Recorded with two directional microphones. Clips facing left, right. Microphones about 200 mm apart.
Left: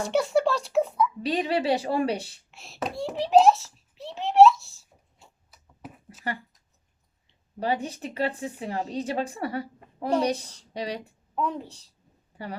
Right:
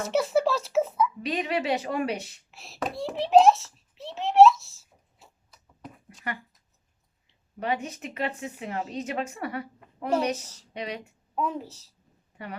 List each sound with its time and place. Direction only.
0.0 s a child's voice: centre (ahead or behind)
1.2 s speech: 30° left (ahead or behind)
2.5 s a sound: centre (ahead or behind)
7.6 s speech: 35° left (ahead or behind)
10.4 s a child's voice: 5° right (ahead or behind)
10.8 s speech: 35° left (ahead or behind)
11.3 s a child's voice: 5° right (ahead or behind)